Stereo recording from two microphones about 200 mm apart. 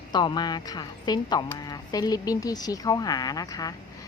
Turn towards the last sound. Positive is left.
turn(degrees=20)  # may be behind; listen again after turning